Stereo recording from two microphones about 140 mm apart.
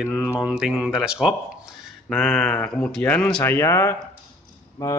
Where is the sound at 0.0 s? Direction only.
10° right (ahead or behind).